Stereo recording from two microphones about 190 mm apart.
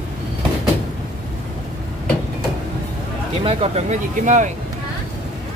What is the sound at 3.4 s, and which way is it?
Speech, 35° right (ahead or behind).